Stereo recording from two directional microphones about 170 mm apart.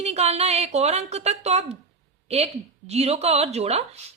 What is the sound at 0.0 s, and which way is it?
A woman's voice, 40° right (ahead or behind).